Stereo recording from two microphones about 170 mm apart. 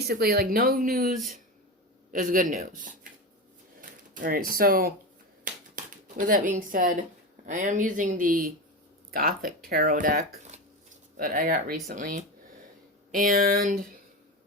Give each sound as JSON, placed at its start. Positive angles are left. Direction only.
{"t": 0.0, "sound": "speech", "side_deg": -65}